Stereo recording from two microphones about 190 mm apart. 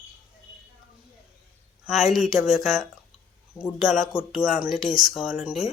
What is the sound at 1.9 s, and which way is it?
Speech, centre (ahead or behind).